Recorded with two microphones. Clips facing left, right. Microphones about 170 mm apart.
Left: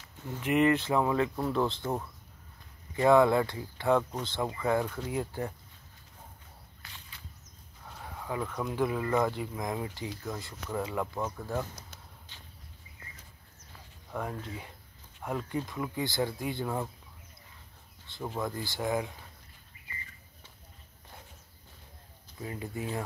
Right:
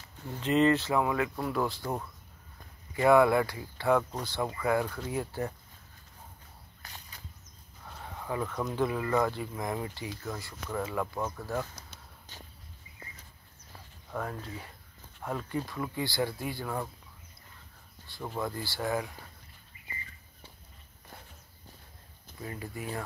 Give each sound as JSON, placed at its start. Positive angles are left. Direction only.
{"t": 0.4, "sound": "speech", "side_deg": 15}
{"t": 3.0, "sound": "speech", "side_deg": 20}
{"t": 6.8, "sound": "a sound", "side_deg": -40}
{"t": 8.3, "sound": "speech", "side_deg": 10}
{"t": 11.1, "sound": "speech", "side_deg": 5}
{"t": 12.3, "sound": "a sound", "side_deg": -40}
{"t": 14.1, "sound": "speech", "side_deg": 10}
{"t": 15.6, "sound": "speech", "side_deg": 20}
{"t": 18.2, "sound": "speech", "side_deg": 5}
{"t": 18.5, "sound": "speech", "side_deg": 20}
{"t": 22.4, "sound": "speech", "side_deg": 10}